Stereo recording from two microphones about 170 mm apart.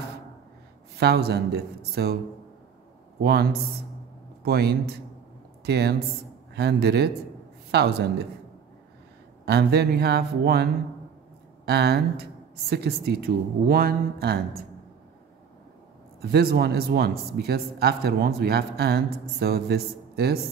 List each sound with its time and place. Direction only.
0.9 s a man's voice: 70° right (ahead or behind)
3.2 s speech: 70° right (ahead or behind)
4.5 s a man's voice: 70° right (ahead or behind)
9.5 s a man's voice: 70° right (ahead or behind)
16.2 s a man's voice: 70° right (ahead or behind)